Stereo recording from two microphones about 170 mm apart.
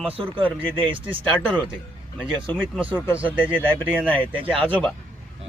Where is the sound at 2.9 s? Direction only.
15° left (ahead or behind).